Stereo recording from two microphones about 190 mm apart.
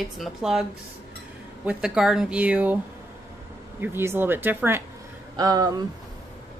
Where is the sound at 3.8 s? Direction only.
10° right (ahead or behind).